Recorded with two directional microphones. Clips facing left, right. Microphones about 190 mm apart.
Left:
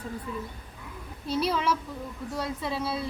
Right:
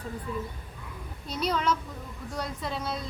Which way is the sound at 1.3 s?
5° left (ahead or behind).